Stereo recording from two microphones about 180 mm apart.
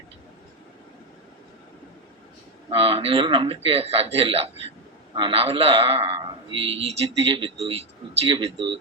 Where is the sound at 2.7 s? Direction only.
30° right (ahead or behind).